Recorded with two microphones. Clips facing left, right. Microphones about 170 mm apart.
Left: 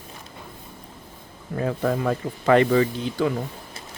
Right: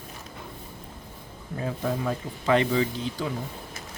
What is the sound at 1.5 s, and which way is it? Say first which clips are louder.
Speech: left 5 dB; 65° left (ahead or behind).